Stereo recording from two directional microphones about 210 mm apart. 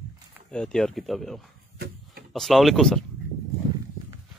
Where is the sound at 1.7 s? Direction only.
50° right (ahead or behind).